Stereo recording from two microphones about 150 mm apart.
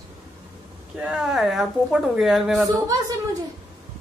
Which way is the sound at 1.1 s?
5° right (ahead or behind).